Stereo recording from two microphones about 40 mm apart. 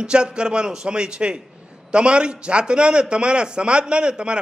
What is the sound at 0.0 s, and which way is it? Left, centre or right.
A man's voice, right.